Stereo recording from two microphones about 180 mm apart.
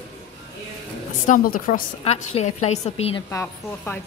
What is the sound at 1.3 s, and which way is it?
Speech, 50° left (ahead or behind).